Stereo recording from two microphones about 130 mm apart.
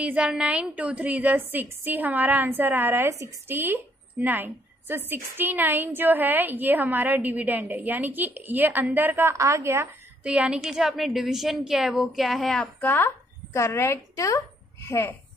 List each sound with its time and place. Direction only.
0.0 s a woman's voice: 10° right (ahead or behind)
10.2 s a woman's voice: 10° right (ahead or behind)
12.8 s speech: 15° left (ahead or behind)